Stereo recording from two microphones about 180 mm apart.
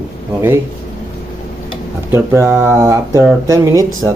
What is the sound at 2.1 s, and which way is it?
Speech, 15° right (ahead or behind).